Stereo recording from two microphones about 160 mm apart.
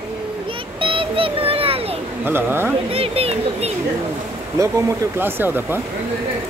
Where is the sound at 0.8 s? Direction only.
35° right (ahead or behind).